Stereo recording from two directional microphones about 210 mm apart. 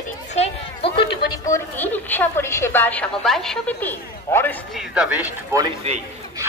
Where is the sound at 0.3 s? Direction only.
30° left (ahead or behind).